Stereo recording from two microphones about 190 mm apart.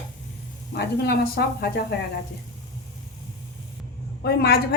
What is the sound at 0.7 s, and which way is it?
Speech, 60° left (ahead or behind).